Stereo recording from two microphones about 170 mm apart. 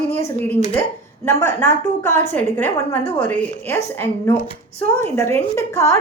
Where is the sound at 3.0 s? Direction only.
35° left (ahead or behind).